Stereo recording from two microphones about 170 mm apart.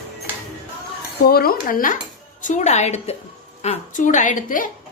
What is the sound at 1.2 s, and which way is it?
A woman's voice, 65° left (ahead or behind).